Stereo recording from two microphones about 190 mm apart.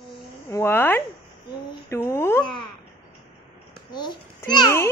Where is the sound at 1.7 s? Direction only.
15° left (ahead or behind).